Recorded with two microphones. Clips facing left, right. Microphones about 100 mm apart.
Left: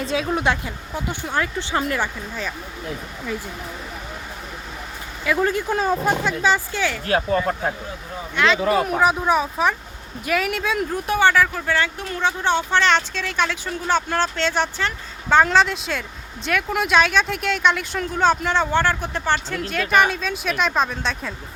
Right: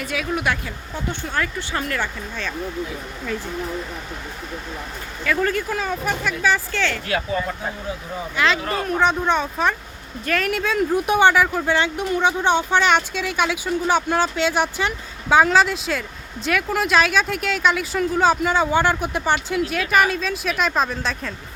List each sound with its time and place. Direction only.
0.0 s speech: 25° left (ahead or behind)
5.2 s speech: 20° left (ahead or behind)
5.7 s speech: 30° left (ahead or behind); by 6.9 s 15° left (ahead or behind)
7.3 s speech: 60° left (ahead or behind)
8.1 s speech: centre (ahead or behind)
8.7 s speech: 10° left (ahead or behind)
10.9 s speech: 15° right (ahead or behind); by 21.3 s centre (ahead or behind)